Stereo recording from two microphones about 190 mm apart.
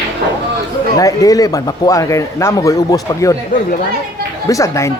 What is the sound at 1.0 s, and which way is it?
Speech, 20° left (ahead or behind).